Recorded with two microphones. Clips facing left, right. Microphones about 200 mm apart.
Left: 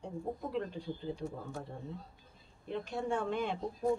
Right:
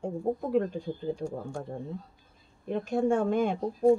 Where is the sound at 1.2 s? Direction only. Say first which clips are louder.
Right 6 dB; 30° right (ahead or behind).